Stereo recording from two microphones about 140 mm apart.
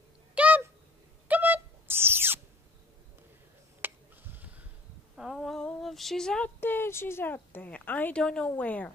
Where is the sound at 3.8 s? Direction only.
15° right (ahead or behind).